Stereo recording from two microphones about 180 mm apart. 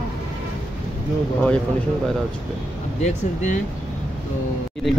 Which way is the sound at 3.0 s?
40° left (ahead or behind).